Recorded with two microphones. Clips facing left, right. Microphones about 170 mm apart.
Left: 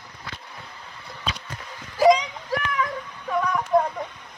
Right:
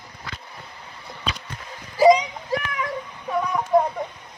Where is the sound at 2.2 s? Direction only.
20° right (ahead or behind).